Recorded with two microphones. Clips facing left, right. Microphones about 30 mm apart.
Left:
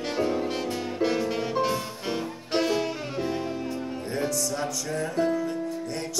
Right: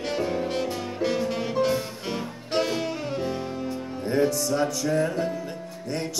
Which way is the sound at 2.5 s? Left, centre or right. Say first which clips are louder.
Even; centre.